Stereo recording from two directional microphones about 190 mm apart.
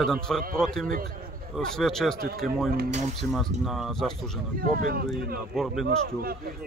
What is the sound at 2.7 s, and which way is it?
Speech, 50° right (ahead or behind).